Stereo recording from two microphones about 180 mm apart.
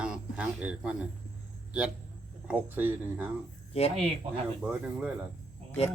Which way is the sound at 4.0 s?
35° right (ahead or behind).